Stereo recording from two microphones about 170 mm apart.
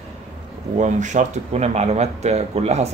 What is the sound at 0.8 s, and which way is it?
Speech, 45° right (ahead or behind).